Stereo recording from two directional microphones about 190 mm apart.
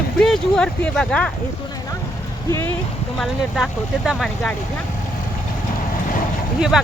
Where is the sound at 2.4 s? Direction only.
15° left (ahead or behind).